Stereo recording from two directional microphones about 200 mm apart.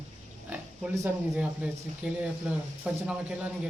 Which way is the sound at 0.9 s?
10° right (ahead or behind).